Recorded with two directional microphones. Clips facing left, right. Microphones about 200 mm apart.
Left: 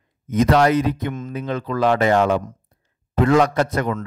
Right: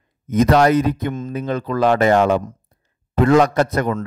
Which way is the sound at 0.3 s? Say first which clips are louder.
Right 2 dB; 45° right (ahead or behind).